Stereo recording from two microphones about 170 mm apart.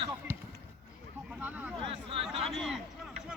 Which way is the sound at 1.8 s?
35° right (ahead or behind).